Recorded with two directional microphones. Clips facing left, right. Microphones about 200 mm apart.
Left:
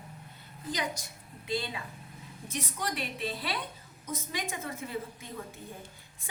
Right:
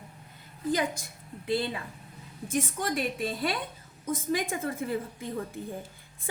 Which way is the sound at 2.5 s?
50° right (ahead or behind).